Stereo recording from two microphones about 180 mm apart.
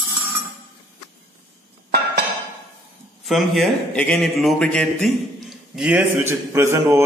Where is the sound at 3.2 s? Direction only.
Centre (ahead or behind).